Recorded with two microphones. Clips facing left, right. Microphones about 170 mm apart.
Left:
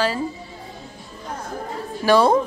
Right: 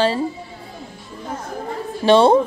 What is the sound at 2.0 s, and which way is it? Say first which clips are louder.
Speech: right 3 dB; 25° right (ahead or behind).